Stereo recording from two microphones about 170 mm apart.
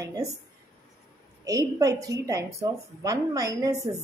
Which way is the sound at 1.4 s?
20° right (ahead or behind).